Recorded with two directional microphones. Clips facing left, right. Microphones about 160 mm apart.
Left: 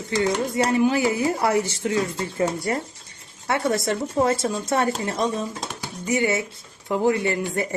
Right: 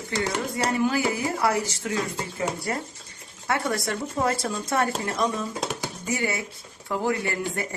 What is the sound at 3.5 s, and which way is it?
Speech, 20° left (ahead or behind).